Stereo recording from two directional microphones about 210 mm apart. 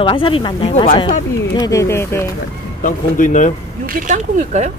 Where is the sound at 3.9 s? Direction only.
35° right (ahead or behind).